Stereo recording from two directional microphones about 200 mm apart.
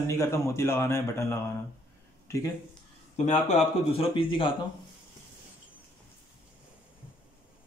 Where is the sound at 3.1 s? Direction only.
35° left (ahead or behind).